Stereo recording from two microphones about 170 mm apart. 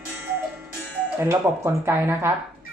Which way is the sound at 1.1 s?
15° right (ahead or behind).